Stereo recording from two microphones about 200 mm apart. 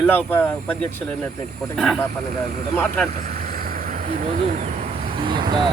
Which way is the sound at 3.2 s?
50° right (ahead or behind).